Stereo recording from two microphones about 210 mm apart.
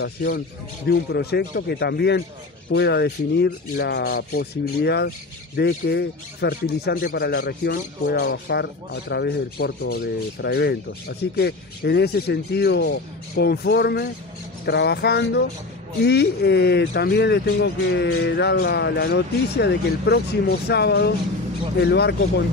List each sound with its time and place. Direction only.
0.0 s speech: 50° left (ahead or behind)